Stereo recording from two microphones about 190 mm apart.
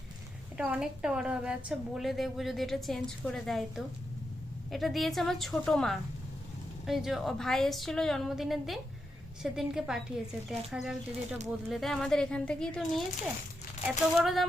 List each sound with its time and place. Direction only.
0.5 s a woman's voice: 5° right (ahead or behind)